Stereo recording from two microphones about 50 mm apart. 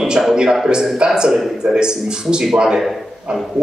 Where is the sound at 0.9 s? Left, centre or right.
Centre.